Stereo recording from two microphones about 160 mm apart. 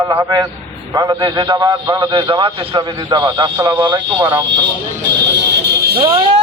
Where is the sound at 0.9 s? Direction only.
25° right (ahead or behind).